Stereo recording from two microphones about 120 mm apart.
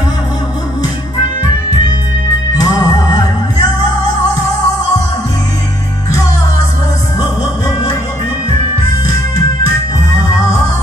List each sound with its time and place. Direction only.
2.5 s music: 35° left (ahead or behind)